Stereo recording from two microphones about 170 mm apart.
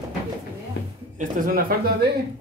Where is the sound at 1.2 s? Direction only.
55° right (ahead or behind).